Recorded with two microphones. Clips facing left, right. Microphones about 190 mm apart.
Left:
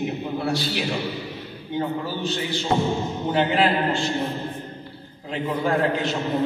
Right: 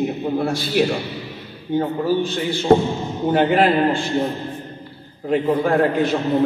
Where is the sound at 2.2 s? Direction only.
50° right (ahead or behind).